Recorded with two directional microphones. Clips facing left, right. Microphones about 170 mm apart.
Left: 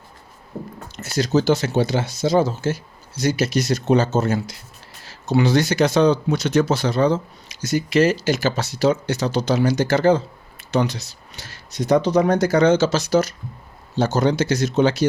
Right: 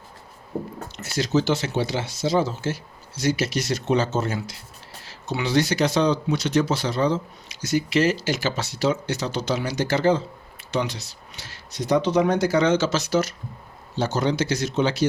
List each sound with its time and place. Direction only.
1.0 s speech: 40° left (ahead or behind)